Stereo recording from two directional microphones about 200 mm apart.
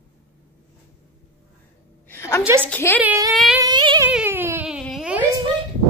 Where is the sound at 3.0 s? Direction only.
15° right (ahead or behind).